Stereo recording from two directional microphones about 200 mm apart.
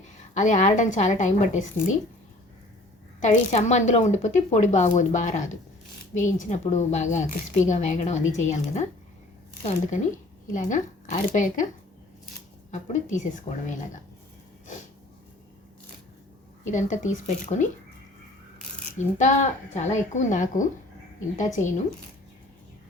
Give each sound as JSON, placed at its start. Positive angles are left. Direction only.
{"t": 0.0, "sound": "speech", "side_deg": 40}
{"t": 3.2, "sound": "speech", "side_deg": 35}
{"t": 13.1, "sound": "speech", "side_deg": 40}
{"t": 16.7, "sound": "speech", "side_deg": 40}
{"t": 19.1, "sound": "speech", "side_deg": 35}